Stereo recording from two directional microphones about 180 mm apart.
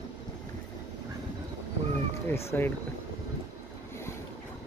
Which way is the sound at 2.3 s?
15° left (ahead or behind).